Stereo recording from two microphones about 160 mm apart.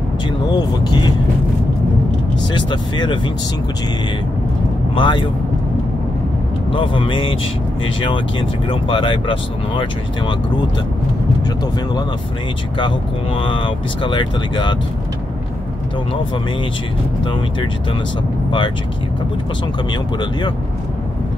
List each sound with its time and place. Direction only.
0.5 s speech: 25° left (ahead or behind)
2.5 s speech: 30° left (ahead or behind)
4.9 s speech: 30° left (ahead or behind)
6.7 s speech: 30° left (ahead or behind)
12.7 s speech: 30° left (ahead or behind)
17.2 s speech: 30° left (ahead or behind)
19.9 s speech: 30° left (ahead or behind)